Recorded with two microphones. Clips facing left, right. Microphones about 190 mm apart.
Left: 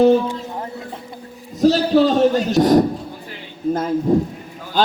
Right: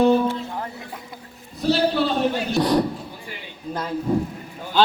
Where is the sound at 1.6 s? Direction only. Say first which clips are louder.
Left 6 dB; 40° left (ahead or behind).